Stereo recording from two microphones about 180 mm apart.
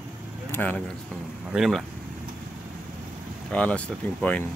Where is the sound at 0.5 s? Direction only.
10° left (ahead or behind).